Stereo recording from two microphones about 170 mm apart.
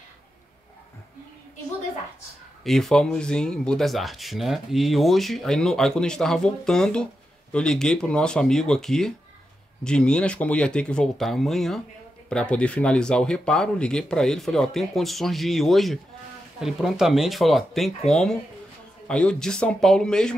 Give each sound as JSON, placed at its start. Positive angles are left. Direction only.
{"t": 2.6, "sound": "speech", "side_deg": 0}